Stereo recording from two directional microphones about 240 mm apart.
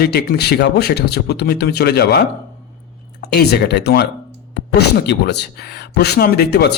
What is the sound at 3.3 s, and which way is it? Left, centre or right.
A man's voice, left.